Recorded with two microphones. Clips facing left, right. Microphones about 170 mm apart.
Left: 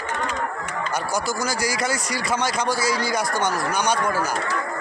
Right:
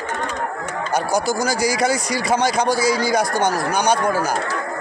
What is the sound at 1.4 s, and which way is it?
Speech, 15° right (ahead or behind).